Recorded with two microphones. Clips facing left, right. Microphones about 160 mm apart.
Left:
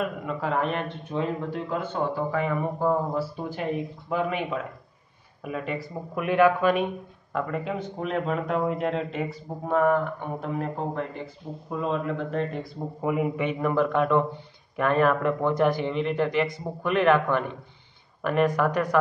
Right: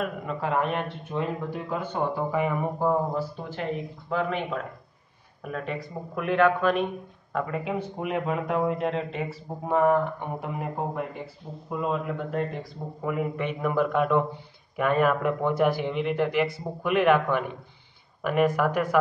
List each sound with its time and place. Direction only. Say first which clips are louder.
0.0 s a man's voice: left 1 dB; centre (ahead or behind)
4.1 s a man's voice: even; 10° left (ahead or behind)
13.0 s speech: left 3 dB; 15° left (ahead or behind)
13.4 s a man's voice: left 1 dB; centre (ahead or behind)